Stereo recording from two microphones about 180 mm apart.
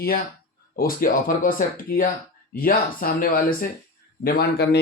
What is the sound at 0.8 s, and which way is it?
Speech, 50° left (ahead or behind).